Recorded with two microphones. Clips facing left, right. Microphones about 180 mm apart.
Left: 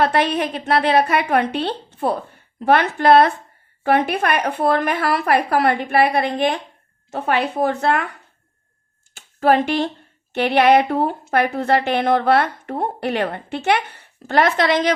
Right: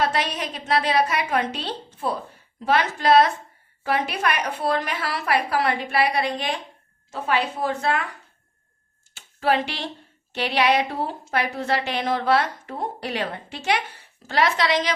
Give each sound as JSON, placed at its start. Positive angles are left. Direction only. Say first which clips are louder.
{"t": 0.0, "sound": "a woman's voice", "louder": "left 6 dB", "side_deg": 60}
{"t": 9.1, "sound": "a woman's voice", "louder": "left 6 dB", "side_deg": 50}